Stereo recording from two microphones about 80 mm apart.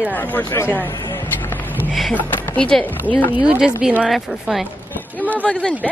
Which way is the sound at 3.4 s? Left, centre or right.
Centre.